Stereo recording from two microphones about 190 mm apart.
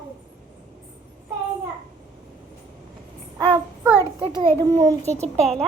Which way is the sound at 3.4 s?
20° right (ahead or behind).